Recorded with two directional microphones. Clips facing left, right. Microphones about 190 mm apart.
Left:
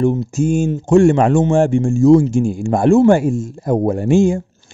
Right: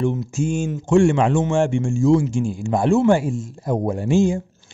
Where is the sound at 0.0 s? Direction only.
40° left (ahead or behind).